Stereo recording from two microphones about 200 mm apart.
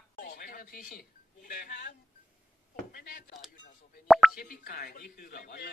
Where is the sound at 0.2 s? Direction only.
45° left (ahead or behind).